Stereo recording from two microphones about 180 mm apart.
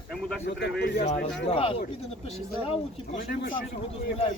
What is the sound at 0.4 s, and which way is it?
Speech, 65° left (ahead or behind).